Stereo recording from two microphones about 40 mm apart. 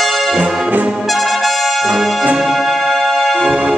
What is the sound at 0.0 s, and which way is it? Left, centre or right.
Brass instrument, centre.